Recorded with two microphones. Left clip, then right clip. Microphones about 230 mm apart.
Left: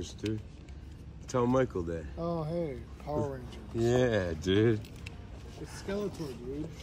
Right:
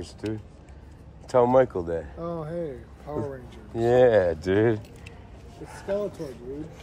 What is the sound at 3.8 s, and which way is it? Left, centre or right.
Speech, centre.